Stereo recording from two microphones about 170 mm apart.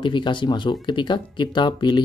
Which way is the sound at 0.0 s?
30° left (ahead or behind).